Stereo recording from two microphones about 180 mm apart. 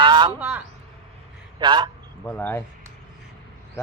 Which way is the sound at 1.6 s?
25° right (ahead or behind).